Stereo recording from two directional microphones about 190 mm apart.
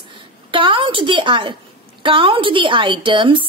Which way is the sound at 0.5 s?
25° right (ahead or behind).